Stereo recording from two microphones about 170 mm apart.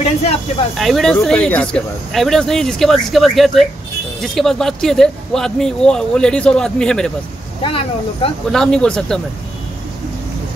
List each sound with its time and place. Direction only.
0.0 s speech: 35° left (ahead or behind)
0.7 s speech: centre (ahead or behind)
7.6 s speech: 35° left (ahead or behind)
8.5 s speech: 5° left (ahead or behind)